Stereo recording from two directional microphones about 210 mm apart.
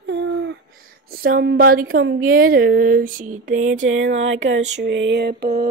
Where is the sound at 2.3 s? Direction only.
45° right (ahead or behind).